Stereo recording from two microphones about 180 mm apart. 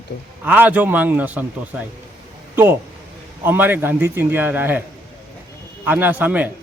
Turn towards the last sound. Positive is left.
turn(degrees=-10)  # may be behind; listen again after turning